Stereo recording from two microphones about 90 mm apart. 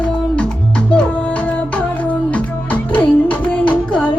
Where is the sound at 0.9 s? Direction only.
15° left (ahead or behind).